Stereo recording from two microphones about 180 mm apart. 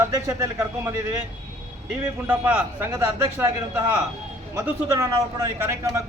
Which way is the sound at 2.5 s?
15° right (ahead or behind).